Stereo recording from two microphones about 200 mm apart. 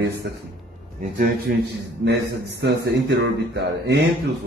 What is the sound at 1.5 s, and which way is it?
A man's voice, 50° right (ahead or behind).